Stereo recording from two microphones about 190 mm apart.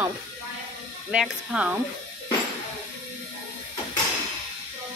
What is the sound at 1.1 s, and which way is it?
Speech, 5° right (ahead or behind).